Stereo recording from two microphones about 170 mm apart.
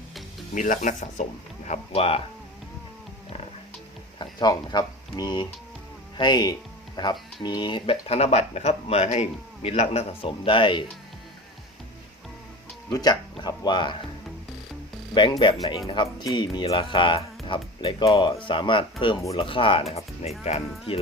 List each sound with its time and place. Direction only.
0.5 s speech: 50° left (ahead or behind)
4.2 s speech: 25° left (ahead or behind)
12.9 s speech: 25° left (ahead or behind)
15.1 s speech: 25° left (ahead or behind)